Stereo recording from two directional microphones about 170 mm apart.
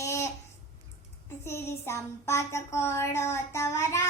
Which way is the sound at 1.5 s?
15° left (ahead or behind).